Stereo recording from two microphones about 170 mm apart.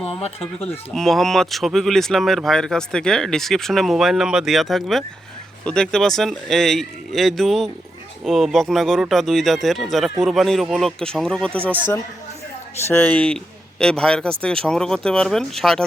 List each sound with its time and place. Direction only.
0.1 s speech: 35° left (ahead or behind)
0.9 s speech: centre (ahead or behind)